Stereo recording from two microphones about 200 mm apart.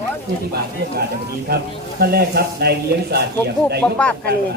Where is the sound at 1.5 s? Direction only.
50° right (ahead or behind).